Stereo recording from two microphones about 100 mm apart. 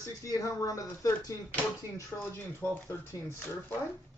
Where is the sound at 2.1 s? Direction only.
20° left (ahead or behind).